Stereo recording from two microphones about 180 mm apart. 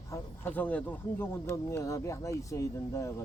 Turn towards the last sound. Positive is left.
turn(degrees=15)  # may be behind; listen again after turning